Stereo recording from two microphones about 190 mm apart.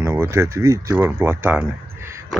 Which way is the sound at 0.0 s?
15° right (ahead or behind).